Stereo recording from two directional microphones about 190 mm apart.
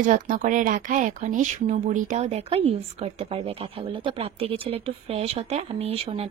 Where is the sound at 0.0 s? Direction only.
45° right (ahead or behind).